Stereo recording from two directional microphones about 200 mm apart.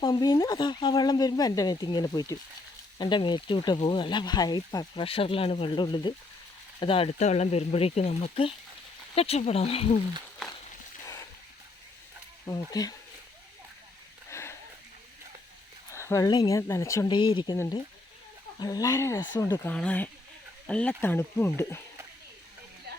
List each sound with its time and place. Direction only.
0.0 s speech: 20° left (ahead or behind)
11.0 s a sound: 15° left (ahead or behind)
12.5 s speech: 20° left (ahead or behind)
14.3 s a sound: 15° left (ahead or behind)
15.9 s speech: 15° left (ahead or behind)
22.9 s music: 50° right (ahead or behind)